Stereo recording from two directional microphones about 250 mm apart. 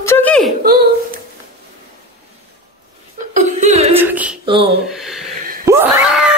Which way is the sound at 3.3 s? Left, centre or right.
Right.